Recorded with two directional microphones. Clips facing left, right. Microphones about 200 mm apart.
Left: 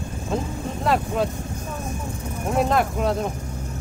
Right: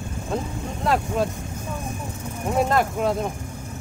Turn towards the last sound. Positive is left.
turn(degrees=0)  # may be behind; listen again after turning